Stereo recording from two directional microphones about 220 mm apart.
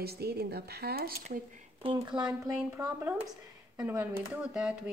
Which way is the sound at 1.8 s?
25° right (ahead or behind).